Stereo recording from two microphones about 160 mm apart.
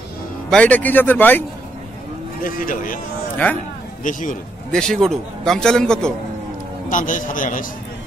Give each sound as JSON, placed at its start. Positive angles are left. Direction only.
{"t": 0.5, "sound": "speech", "side_deg": 5}
{"t": 2.4, "sound": "a man's voice", "side_deg": 60}
{"t": 4.0, "sound": "a man's voice", "side_deg": 55}
{"t": 4.7, "sound": "a man's voice", "side_deg": 5}
{"t": 6.9, "sound": "a man's voice", "side_deg": 55}